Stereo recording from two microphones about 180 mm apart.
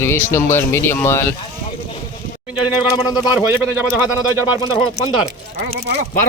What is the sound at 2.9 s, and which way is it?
Speech, 20° left (ahead or behind).